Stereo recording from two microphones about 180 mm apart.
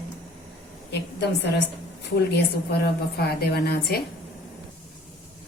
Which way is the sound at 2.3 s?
60° left (ahead or behind).